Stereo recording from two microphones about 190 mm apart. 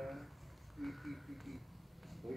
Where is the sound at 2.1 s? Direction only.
Centre (ahead or behind).